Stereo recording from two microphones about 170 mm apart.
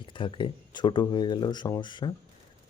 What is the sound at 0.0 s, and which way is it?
Speech, 30° left (ahead or behind).